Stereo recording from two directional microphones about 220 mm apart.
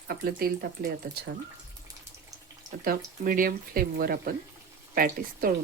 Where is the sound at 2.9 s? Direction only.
40° right (ahead or behind).